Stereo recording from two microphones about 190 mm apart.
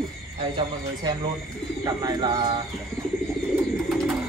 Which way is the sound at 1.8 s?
20° right (ahead or behind).